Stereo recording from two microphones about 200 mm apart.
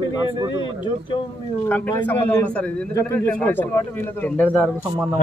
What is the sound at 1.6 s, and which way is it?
A man's voice, 10° left (ahead or behind).